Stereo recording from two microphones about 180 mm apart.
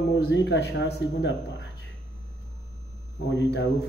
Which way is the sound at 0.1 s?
85° left.